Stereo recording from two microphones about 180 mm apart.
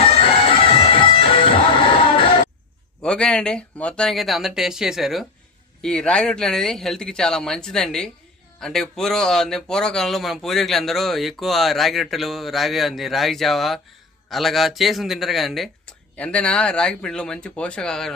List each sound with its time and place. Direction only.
0.0 s music: 30° left (ahead or behind)
3.0 s speech: 5° left (ahead or behind)